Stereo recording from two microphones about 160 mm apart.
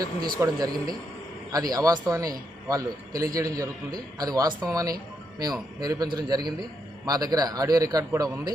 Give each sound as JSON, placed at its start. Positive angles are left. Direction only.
{"t": 0.3, "sound": "a man's voice", "side_deg": -20}